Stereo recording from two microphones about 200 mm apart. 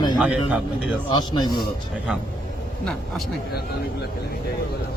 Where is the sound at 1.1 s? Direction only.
20° left (ahead or behind).